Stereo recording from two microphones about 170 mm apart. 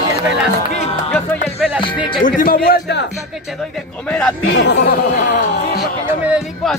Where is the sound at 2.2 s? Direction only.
55° left (ahead or behind).